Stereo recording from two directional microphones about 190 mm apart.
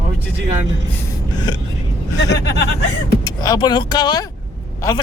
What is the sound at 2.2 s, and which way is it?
Speech, 65° left (ahead or behind).